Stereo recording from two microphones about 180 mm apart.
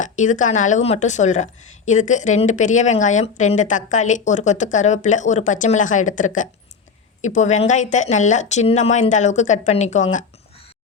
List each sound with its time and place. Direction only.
0.0 s a woman's voice: 45° left (ahead or behind)